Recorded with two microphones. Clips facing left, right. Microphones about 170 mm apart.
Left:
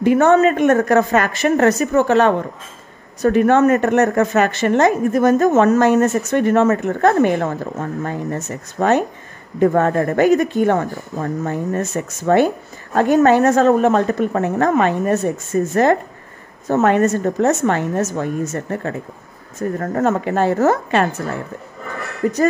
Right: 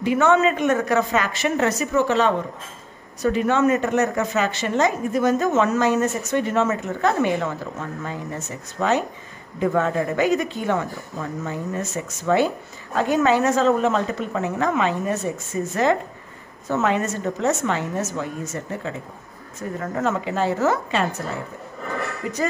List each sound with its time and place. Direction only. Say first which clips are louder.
0.0 s a woman's voice: left 5 dB; 50° left (ahead or behind)
22.2 s a woman's voice: left 10 dB; 45° left (ahead or behind)